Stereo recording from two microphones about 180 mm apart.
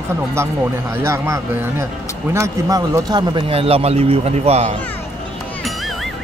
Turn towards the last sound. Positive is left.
turn(degrees=-35)  # may be behind; listen again after turning